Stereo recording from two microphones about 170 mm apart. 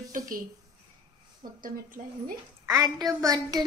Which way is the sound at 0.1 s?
50° right (ahead or behind).